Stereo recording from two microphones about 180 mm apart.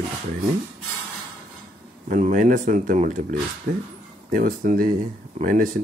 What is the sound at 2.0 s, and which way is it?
Speech, 45° right (ahead or behind).